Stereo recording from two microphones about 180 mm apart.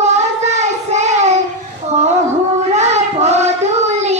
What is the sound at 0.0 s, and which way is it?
Child singing, 40° right (ahead or behind).